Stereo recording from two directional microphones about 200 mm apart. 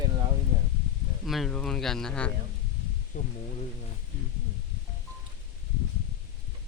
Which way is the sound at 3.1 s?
50° left (ahead or behind).